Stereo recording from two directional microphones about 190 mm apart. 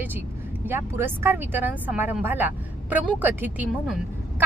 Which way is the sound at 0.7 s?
10° right (ahead or behind).